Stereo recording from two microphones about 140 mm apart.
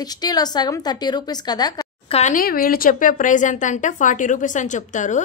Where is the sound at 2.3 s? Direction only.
90° left; by 5.2 s 60° left (ahead or behind).